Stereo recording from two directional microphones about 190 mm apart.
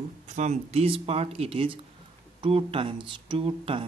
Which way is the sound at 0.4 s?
35° right (ahead or behind).